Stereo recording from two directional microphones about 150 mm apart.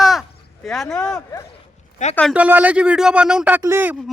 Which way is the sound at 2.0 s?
55° left (ahead or behind).